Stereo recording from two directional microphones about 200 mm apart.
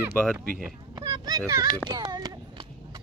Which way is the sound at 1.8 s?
20° right (ahead or behind).